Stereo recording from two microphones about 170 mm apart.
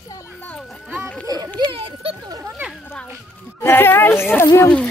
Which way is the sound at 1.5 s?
30° right (ahead or behind).